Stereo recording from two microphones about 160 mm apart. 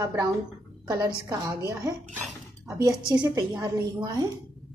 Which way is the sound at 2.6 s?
20° right (ahead or behind).